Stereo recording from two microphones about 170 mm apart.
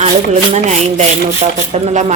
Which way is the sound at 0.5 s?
40° right (ahead or behind).